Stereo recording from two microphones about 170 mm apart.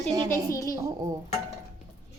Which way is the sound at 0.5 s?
20° left (ahead or behind).